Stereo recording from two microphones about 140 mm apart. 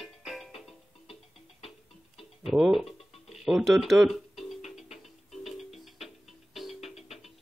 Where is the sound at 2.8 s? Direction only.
45° left (ahead or behind).